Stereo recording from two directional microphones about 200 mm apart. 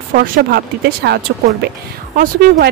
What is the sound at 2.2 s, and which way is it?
Speech, 45° right (ahead or behind).